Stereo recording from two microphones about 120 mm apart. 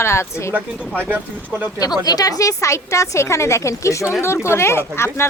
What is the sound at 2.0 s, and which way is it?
A woman's voice, 30° left (ahead or behind).